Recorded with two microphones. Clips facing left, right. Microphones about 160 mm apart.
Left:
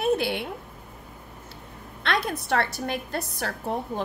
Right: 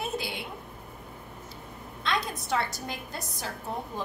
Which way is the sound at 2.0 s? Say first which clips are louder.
Left 4 dB; 65° left (ahead or behind).